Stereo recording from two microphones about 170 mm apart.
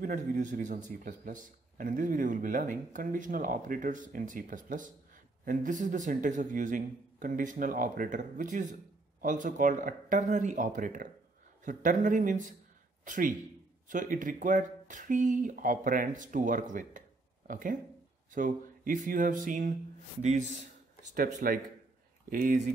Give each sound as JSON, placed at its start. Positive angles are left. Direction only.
{"t": 0.0, "sound": "a man's voice", "side_deg": -50}